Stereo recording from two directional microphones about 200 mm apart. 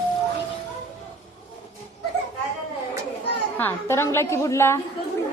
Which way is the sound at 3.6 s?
10° left (ahead or behind).